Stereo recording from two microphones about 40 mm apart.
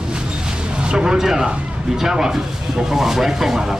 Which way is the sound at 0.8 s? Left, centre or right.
Centre.